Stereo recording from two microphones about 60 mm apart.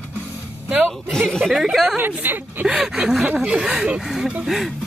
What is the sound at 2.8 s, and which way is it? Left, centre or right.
Speech, centre.